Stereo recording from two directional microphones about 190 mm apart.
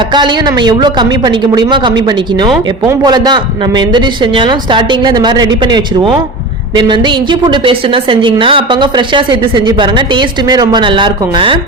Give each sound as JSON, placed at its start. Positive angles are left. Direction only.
{"t": 0.1, "sound": "a woman's voice", "side_deg": -25}